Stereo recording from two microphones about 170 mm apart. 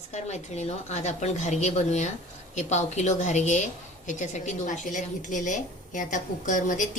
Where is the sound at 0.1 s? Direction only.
40° left (ahead or behind).